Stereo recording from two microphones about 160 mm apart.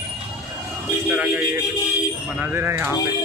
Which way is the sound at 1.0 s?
10° right (ahead or behind).